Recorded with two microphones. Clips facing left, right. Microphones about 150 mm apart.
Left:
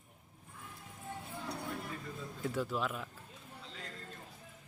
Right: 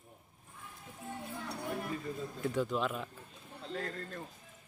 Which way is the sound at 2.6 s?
5° left (ahead or behind).